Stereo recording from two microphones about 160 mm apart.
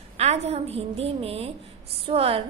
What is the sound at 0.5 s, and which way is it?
A woman's voice, 40° right (ahead or behind).